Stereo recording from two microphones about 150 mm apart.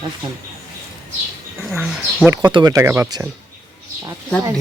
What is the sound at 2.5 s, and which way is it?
Speech, 30° right (ahead or behind).